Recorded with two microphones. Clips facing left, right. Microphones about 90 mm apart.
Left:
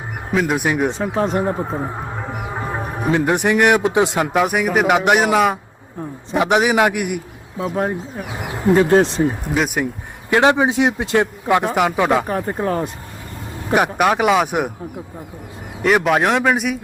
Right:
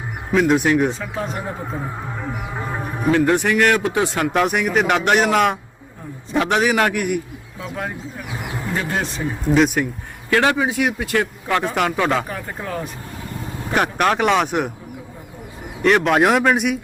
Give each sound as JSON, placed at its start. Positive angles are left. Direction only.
{"t": 0.3, "sound": "speech", "side_deg": 5}
{"t": 0.9, "sound": "speech", "side_deg": 40}
{"t": 4.3, "sound": "a man's voice", "side_deg": 5}
{"t": 6.3, "sound": "speech", "side_deg": 15}
{"t": 7.6, "sound": "speech", "side_deg": 35}
{"t": 8.3, "sound": "speech", "side_deg": 20}
{"t": 9.6, "sound": "a man's voice", "side_deg": 5}
{"t": 10.2, "sound": "speech", "side_deg": 20}
{"t": 12.3, "sound": "speech", "side_deg": 40}
{"t": 13.7, "sound": "speech", "side_deg": 10}
{"t": 15.8, "sound": "a man's voice", "side_deg": 5}